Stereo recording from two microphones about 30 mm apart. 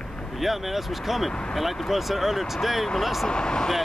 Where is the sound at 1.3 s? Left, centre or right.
Left.